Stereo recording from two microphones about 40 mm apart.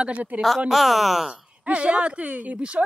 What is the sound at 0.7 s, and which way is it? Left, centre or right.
Speech, centre.